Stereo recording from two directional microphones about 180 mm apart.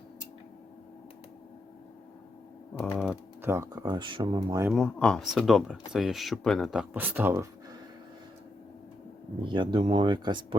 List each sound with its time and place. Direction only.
2.7 s typing: 10° left (ahead or behind)
3.0 s speech: 10° right (ahead or behind)
4.7 s speech: 5° left (ahead or behind); by 7.8 s 15° right (ahead or behind)
9.4 s speech: 25° right (ahead or behind)